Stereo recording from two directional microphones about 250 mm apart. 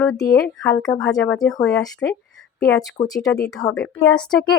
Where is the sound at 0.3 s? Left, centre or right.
Centre.